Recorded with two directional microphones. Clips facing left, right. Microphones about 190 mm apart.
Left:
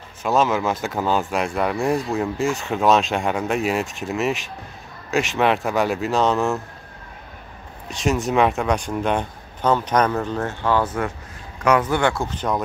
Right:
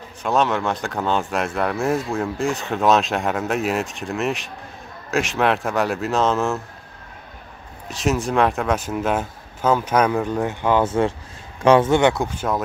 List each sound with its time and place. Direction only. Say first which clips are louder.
0.2 s speech: left 1 dB; centre (ahead or behind)
7.9 s speech: even; centre (ahead or behind)